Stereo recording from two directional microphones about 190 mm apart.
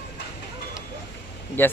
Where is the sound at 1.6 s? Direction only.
10° left (ahead or behind).